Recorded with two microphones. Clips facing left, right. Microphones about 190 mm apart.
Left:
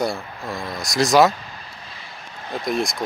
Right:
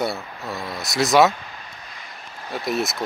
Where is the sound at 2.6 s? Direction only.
5° right (ahead or behind).